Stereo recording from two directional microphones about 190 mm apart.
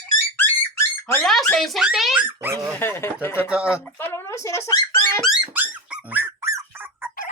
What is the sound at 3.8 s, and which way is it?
Speech, 10° left (ahead or behind).